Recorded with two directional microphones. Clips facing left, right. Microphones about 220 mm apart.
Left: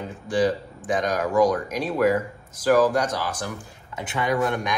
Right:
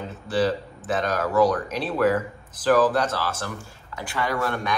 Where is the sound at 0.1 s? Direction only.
15° left (ahead or behind).